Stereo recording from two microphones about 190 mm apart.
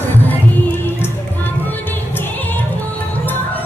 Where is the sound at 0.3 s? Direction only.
10° left (ahead or behind).